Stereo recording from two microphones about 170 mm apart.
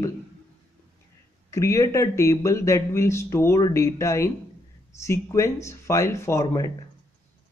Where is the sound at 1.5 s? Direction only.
20° left (ahead or behind).